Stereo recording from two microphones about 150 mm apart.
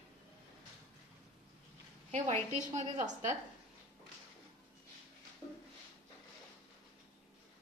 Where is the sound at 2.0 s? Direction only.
45° right (ahead or behind).